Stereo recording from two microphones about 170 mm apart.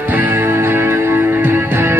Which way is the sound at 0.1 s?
10° right (ahead or behind).